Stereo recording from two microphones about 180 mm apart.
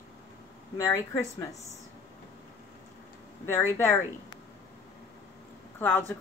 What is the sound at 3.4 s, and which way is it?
Speech, 15° left (ahead or behind).